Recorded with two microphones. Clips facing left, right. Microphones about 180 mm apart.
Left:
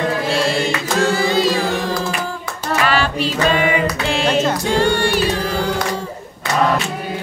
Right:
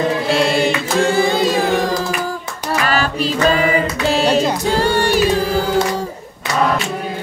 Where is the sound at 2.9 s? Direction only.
40° right (ahead or behind).